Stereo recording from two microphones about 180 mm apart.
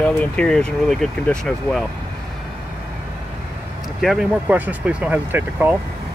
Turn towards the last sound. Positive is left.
turn(degrees=-10)  # may be behind; listen again after turning